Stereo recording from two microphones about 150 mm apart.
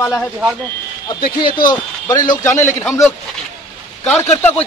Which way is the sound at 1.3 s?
30° left (ahead or behind).